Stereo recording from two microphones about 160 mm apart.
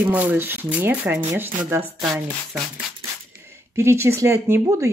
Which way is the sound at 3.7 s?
15° right (ahead or behind).